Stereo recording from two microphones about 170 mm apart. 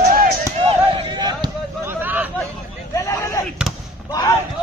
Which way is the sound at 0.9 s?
25° right (ahead or behind).